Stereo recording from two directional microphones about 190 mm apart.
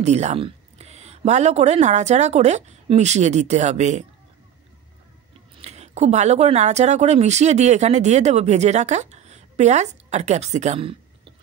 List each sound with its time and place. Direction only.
0.0 s speech: 35° right (ahead or behind)
5.6 s speech: 35° right (ahead or behind)